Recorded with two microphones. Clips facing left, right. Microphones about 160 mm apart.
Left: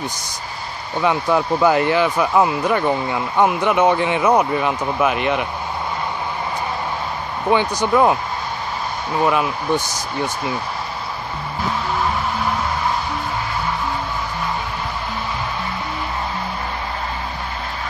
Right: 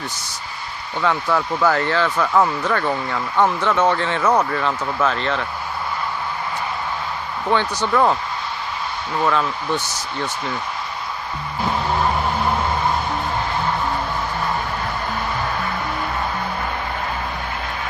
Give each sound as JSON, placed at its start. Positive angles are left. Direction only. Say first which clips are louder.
{"t": 1.0, "sound": "speech", "louder": "left 2 dB", "side_deg": 15}
{"t": 7.4, "sound": "speech", "louder": "left 3 dB", "side_deg": 15}
{"t": 9.2, "sound": "speech", "louder": "left 2 dB", "side_deg": 15}